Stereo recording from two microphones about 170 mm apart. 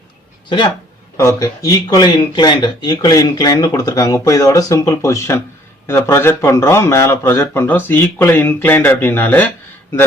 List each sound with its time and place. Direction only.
1.4 s speech: 20° left (ahead or behind)